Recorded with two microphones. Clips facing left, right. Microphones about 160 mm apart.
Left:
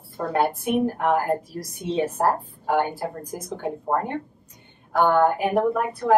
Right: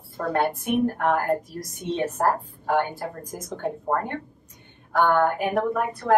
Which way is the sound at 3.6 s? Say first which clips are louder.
Left 1 dB; 10° left (ahead or behind).